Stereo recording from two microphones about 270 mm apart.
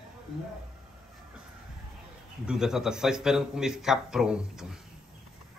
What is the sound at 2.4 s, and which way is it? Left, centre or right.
A man's voice, centre.